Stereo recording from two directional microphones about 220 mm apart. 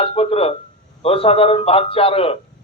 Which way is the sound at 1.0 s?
25° left (ahead or behind).